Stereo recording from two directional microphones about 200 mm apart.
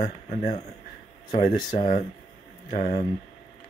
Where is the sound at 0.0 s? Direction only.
35° left (ahead or behind).